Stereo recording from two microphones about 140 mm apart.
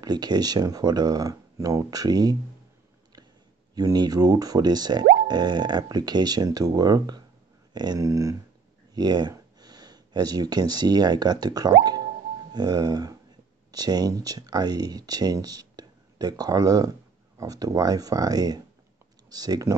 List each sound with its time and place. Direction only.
0.0 s speech: 30° right (ahead or behind)
3.7 s speech: 30° right (ahead or behind)